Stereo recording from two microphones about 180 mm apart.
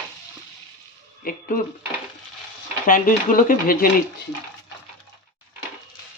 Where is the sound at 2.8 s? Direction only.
50° left (ahead or behind).